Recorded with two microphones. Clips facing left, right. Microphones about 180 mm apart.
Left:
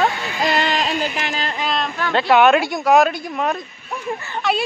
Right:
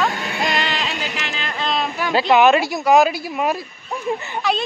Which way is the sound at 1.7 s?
5° right (ahead or behind).